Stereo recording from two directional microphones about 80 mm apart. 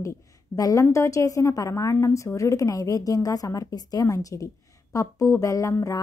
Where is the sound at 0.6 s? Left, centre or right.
Left.